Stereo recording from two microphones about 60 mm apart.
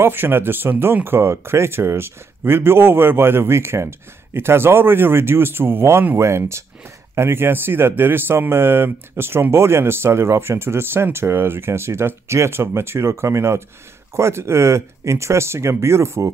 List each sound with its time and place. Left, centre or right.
0.0 s speech: right